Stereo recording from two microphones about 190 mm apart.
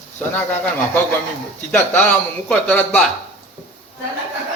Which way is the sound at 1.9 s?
5° left (ahead or behind).